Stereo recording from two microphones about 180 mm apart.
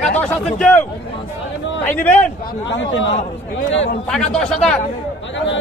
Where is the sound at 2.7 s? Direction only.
90° left.